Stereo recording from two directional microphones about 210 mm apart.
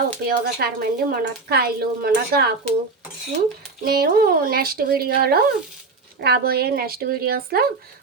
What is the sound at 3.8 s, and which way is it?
Speech, 45° right (ahead or behind).